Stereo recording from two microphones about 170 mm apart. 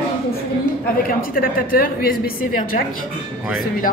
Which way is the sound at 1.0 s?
55° left (ahead or behind).